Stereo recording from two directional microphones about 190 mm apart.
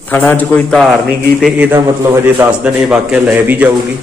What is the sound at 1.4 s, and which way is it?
A man's voice, 5° right (ahead or behind).